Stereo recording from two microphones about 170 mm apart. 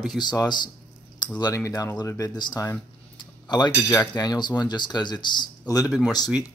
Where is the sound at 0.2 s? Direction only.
25° left (ahead or behind).